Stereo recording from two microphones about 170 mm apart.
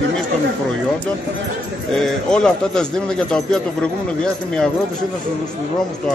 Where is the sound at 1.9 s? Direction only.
5° left (ahead or behind).